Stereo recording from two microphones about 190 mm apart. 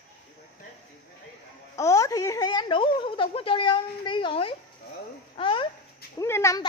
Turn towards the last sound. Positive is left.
turn(degrees=15)  # may be behind; listen again after turning